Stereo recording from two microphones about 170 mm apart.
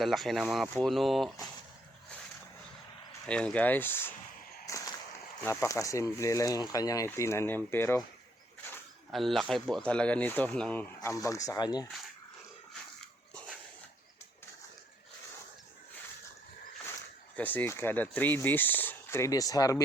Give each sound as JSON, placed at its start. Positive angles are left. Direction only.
{"t": 0.0, "sound": "speech", "side_deg": 0}
{"t": 3.2, "sound": "speech", "side_deg": 5}
{"t": 4.7, "sound": "a sound", "side_deg": 20}
{"t": 5.4, "sound": "speech", "side_deg": 15}
{"t": 9.1, "sound": "speech", "side_deg": 0}
{"t": 17.3, "sound": "speech", "side_deg": 10}